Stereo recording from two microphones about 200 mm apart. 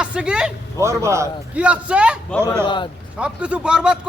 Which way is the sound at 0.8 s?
15° right (ahead or behind).